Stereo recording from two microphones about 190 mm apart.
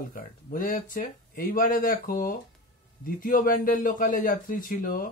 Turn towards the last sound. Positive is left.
turn(degrees=45)  # may be behind; listen again after turning